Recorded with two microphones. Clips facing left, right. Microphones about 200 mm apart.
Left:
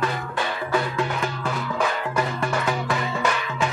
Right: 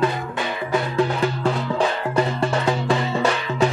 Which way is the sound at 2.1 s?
30° right (ahead or behind).